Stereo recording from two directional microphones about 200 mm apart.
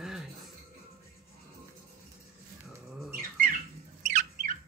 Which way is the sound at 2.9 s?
Centre (ahead or behind).